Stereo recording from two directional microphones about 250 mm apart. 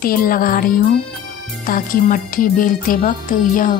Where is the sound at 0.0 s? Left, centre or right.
Left.